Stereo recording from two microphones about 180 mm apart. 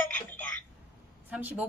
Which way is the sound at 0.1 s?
10° left (ahead or behind).